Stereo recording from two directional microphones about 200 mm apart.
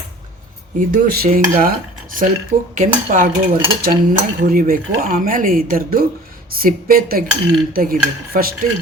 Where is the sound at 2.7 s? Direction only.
40° right (ahead or behind).